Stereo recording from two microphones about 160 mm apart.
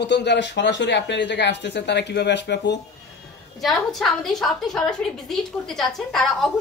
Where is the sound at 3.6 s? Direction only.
Centre (ahead or behind).